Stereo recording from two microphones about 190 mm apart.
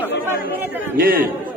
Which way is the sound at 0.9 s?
50° right (ahead or behind).